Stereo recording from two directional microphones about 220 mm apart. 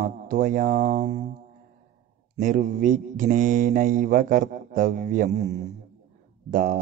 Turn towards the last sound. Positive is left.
turn(degrees=-35)  # may be behind; listen again after turning